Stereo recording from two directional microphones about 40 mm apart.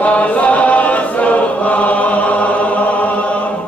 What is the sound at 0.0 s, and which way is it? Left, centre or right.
Chant, left.